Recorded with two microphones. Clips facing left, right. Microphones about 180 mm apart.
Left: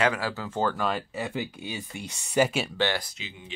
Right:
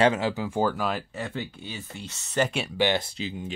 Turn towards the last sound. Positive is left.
turn(degrees=-40)  # may be behind; listen again after turning